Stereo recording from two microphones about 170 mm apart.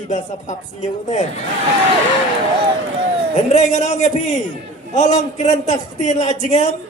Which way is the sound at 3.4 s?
45° left (ahead or behind).